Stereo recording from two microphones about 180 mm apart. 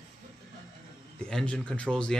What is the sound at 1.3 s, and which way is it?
Speech, 5° left (ahead or behind).